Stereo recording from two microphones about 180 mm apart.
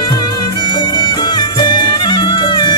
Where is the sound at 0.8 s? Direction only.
25° left (ahead or behind).